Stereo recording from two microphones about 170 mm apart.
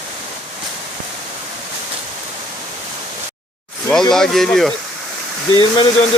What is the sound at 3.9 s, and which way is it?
Speech, 5° left (ahead or behind).